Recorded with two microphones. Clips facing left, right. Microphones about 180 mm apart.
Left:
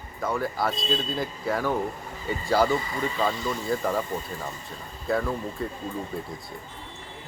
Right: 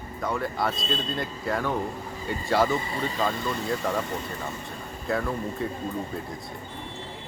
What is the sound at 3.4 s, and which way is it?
Speech, 70° right (ahead or behind).